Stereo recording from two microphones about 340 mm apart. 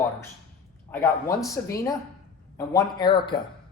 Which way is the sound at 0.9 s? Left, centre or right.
Centre.